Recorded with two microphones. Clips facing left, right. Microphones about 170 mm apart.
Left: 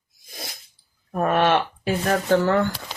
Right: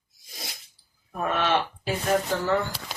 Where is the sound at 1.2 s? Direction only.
55° left (ahead or behind).